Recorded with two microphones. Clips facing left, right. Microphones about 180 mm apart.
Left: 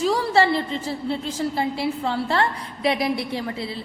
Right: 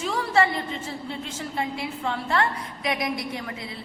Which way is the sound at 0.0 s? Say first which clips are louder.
Left 4 dB; 35° left (ahead or behind).